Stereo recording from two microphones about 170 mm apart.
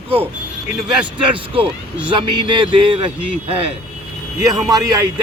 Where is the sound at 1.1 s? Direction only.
30° right (ahead or behind).